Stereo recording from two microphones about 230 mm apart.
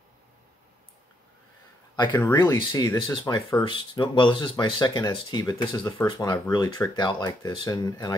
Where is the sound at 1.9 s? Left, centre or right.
Centre.